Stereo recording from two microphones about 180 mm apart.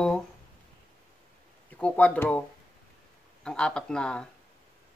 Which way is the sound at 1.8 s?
10° left (ahead or behind).